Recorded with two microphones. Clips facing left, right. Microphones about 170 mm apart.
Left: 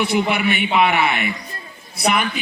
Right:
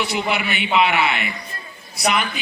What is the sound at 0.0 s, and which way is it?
A man's voice, 55° left (ahead or behind).